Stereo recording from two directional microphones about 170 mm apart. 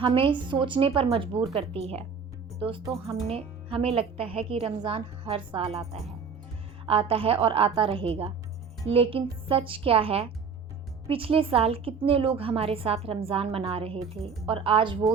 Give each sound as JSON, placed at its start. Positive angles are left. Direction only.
{"t": 0.0, "sound": "a woman's voice", "side_deg": -30}
{"t": 6.8, "sound": "a woman's voice", "side_deg": -35}